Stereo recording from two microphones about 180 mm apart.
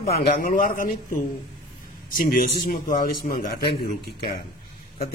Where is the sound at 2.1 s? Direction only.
50° left (ahead or behind).